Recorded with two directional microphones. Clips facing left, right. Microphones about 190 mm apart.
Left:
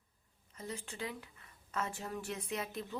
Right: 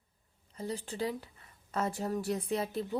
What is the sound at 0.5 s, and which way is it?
A woman's voice, 35° right (ahead or behind).